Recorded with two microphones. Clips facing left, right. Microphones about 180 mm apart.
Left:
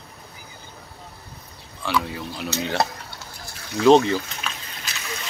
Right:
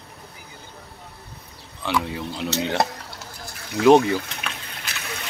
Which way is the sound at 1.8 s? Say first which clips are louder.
Even; 20° right (ahead or behind).